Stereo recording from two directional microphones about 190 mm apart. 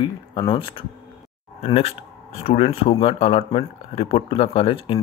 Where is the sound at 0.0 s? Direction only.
25° left (ahead or behind).